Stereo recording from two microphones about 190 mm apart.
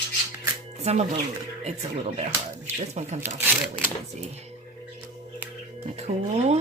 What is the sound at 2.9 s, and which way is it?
Speech, 35° right (ahead or behind).